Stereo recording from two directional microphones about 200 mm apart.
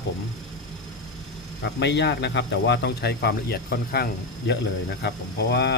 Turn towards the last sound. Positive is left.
turn(degrees=55)  # may be behind; listen again after turning